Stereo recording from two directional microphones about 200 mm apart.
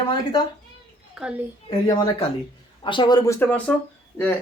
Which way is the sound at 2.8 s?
25° left (ahead or behind).